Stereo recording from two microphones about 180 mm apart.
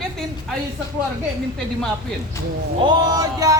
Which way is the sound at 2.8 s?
20° right (ahead or behind).